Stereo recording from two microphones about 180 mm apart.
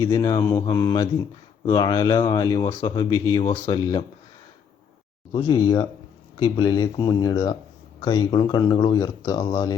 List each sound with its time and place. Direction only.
0.0 s speech: 20° left (ahead or behind)
5.3 s speech: 25° left (ahead or behind)